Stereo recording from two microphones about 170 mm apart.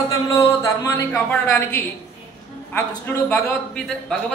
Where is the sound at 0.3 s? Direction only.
15° left (ahead or behind).